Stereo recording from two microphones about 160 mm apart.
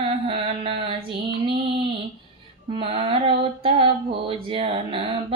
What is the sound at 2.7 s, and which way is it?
Music, 35° right (ahead or behind).